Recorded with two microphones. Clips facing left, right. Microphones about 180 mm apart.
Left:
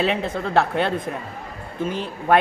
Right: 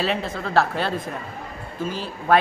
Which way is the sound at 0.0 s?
15° left (ahead or behind).